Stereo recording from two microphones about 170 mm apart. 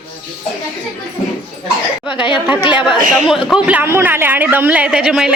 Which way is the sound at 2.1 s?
30° left (ahead or behind).